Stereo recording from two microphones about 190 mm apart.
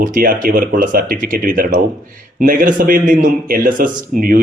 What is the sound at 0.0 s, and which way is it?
A man's voice, 45° right (ahead or behind).